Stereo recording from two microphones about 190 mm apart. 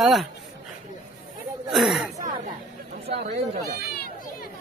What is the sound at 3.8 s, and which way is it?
Speech, 55° left (ahead or behind).